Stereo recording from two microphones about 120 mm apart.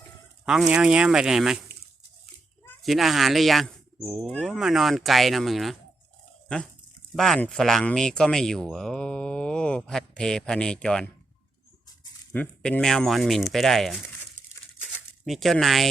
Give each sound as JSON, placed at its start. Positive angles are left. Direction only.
{"t": 0.7, "sound": "speech", "side_deg": -10}
{"t": 2.8, "sound": "speech", "side_deg": 0}
{"t": 7.2, "sound": "speech", "side_deg": 5}
{"t": 12.3, "sound": "speech", "side_deg": 15}
{"t": 12.8, "sound": "speech", "side_deg": 0}
{"t": 14.8, "sound": "a sound", "side_deg": -5}